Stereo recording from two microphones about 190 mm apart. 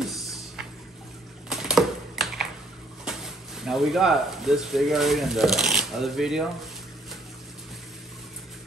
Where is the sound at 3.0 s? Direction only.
Centre (ahead or behind).